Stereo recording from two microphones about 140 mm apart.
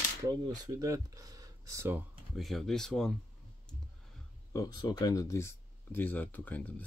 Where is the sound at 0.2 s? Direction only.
30° right (ahead or behind).